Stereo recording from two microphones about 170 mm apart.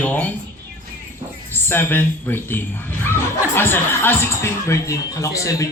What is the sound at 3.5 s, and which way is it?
Speech, 15° left (ahead or behind).